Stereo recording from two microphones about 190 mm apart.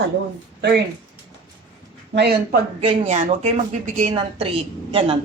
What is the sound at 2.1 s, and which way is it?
Speech, 60° right (ahead or behind).